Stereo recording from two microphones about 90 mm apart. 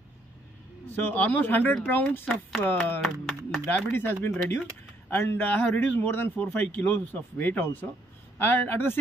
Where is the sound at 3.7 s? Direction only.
20° left (ahead or behind).